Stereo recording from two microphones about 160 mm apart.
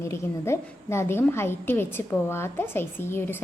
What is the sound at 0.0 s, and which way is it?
A woman's voice, 15° left (ahead or behind).